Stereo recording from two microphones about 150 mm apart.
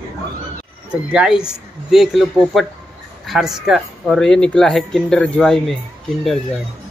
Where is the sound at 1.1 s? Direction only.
5° right (ahead or behind).